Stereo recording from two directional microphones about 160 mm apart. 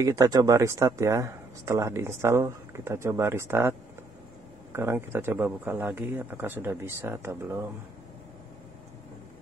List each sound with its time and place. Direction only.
0.0 s speech: 20° right (ahead or behind)
4.7 s speech: 15° right (ahead or behind)